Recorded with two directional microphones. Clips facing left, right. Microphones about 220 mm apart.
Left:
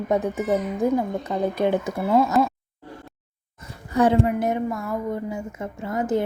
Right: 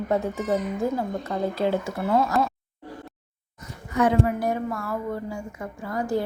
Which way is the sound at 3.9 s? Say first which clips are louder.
Left 3 dB; 30° left (ahead or behind).